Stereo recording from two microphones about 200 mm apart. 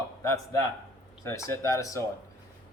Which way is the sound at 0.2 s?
15° left (ahead or behind).